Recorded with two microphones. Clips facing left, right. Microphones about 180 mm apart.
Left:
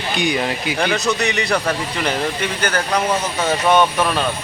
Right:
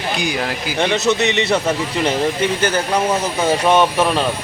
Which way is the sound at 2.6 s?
25° right (ahead or behind).